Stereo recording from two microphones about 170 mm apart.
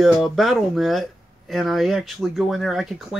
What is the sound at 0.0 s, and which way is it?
Speech, centre (ahead or behind).